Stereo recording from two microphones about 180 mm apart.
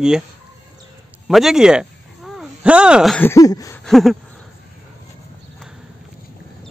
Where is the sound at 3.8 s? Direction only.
Centre (ahead or behind).